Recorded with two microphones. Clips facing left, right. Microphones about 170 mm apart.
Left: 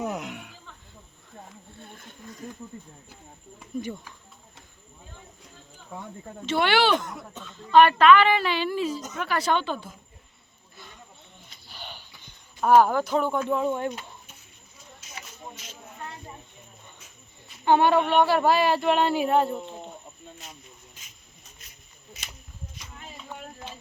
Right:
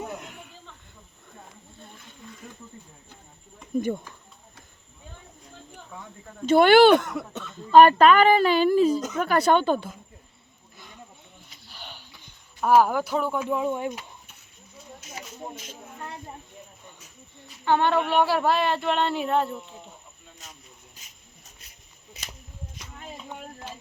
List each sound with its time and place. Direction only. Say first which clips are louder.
0.0 s snake: left 5 dB; 75° left (ahead or behind)
3.8 s speech: right 6 dB; 50° right (ahead or behind)
6.5 s speech: right 8 dB; 45° right (ahead or behind); by 7.4 s 75° right (ahead or behind)
7.7 s speech: right 2 dB; 40° right (ahead or behind)
12.5 s speech: left 1 dB; 5° right (ahead or behind)
15.0 s a sound: right 4 dB; 50° right (ahead or behind)
17.7 s speech: left 2 dB; 10° left (ahead or behind)
17.9 s speech: left 2 dB; 5° right (ahead or behind)
21.0 s a sound: even; 35° right (ahead or behind)